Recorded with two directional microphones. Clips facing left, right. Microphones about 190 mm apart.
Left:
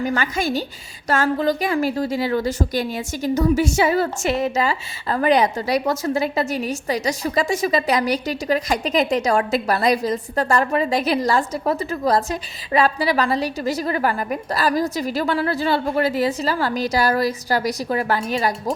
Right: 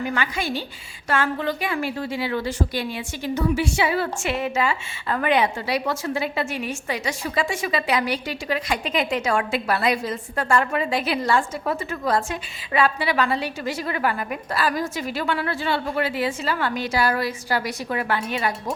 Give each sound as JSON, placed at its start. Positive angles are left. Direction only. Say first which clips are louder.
{"t": 0.0, "sound": "a woman's voice", "louder": "left 4 dB", "side_deg": 40}